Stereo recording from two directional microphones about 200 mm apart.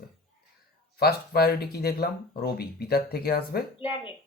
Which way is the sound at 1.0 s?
50° left (ahead or behind).